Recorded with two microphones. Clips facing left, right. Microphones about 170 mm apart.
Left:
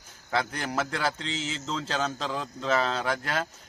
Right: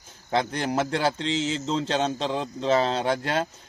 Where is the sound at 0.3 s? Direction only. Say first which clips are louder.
Right 4 dB; 30° right (ahead or behind).